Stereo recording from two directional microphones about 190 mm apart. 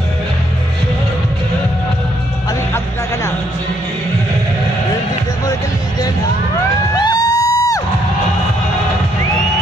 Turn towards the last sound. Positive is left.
turn(degrees=20)  # may be behind; listen again after turning